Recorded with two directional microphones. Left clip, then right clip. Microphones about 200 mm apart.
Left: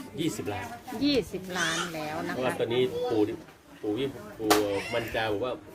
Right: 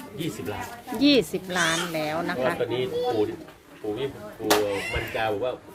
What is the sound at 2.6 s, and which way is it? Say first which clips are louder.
Speech: even; 55° left (ahead or behind).